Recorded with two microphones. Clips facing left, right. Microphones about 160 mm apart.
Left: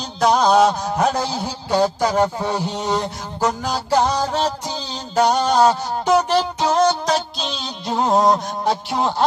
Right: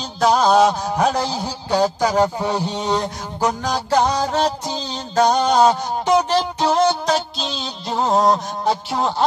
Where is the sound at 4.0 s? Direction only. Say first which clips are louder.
Right 1 dB; 10° right (ahead or behind).